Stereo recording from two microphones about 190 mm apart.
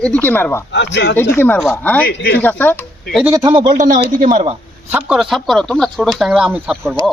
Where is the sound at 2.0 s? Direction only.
55° left (ahead or behind).